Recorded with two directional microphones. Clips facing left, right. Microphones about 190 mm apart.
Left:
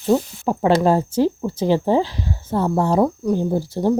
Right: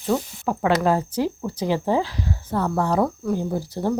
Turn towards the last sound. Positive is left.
turn(degrees=25)  # may be behind; listen again after turning